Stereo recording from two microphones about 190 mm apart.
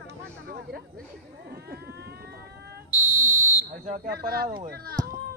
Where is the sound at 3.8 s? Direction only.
45° right (ahead or behind).